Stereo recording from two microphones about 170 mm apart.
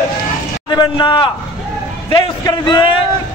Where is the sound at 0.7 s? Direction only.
25° left (ahead or behind).